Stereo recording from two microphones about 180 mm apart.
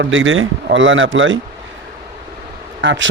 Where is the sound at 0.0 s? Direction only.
90° right.